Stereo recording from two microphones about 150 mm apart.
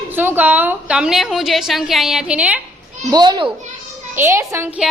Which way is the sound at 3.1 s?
30° right (ahead or behind).